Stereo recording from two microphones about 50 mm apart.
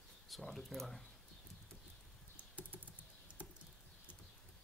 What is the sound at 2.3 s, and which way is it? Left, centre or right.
Typing, right.